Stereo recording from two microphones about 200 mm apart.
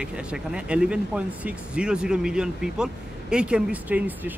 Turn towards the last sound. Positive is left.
turn(degrees=-5)  # may be behind; listen again after turning